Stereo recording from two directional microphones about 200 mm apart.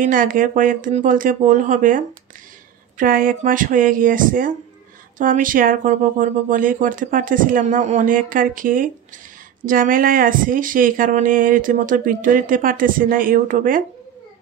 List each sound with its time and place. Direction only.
0.0 s speech: 45° right (ahead or behind)